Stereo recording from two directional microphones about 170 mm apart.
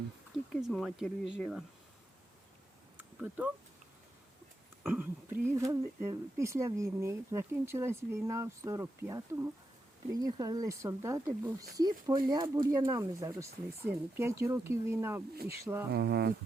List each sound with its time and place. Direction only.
0.5 s speech: 5° left (ahead or behind)
3.0 s a sound: 10° right (ahead or behind)
4.9 s speech: 10° right (ahead or behind)
15.9 s speech: 75° right (ahead or behind)